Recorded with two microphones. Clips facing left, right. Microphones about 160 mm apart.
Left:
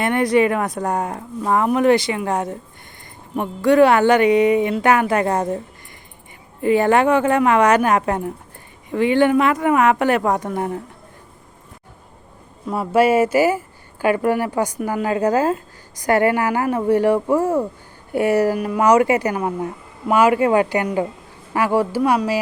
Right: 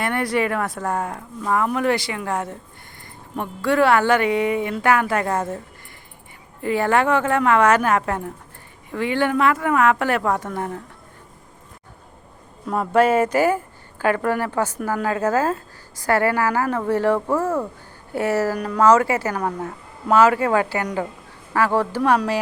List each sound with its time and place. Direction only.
0.0 s speech: 20° left (ahead or behind)
6.6 s speech: 20° left (ahead or behind)
12.6 s speech: 5° left (ahead or behind)